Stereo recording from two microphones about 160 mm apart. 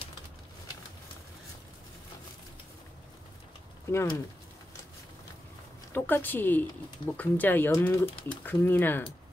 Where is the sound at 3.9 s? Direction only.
20° left (ahead or behind).